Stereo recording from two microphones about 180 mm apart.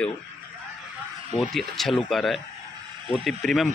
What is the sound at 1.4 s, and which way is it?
Speech, centre (ahead or behind).